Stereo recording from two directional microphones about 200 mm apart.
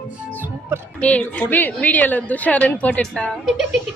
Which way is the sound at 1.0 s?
5° left (ahead or behind).